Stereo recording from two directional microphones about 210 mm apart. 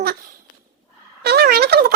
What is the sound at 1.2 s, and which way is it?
Turkey, 50° right (ahead or behind).